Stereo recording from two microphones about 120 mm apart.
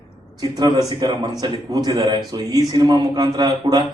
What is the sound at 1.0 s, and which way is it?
A man's voice, 35° right (ahead or behind).